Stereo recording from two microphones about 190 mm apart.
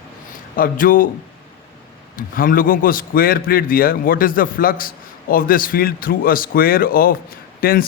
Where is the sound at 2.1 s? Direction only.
45° left (ahead or behind).